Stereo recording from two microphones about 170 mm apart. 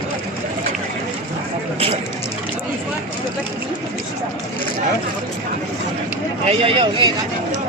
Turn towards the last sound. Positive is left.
turn(degrees=-30)  # may be behind; listen again after turning